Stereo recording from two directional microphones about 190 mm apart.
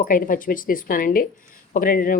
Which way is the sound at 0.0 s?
45° left (ahead or behind).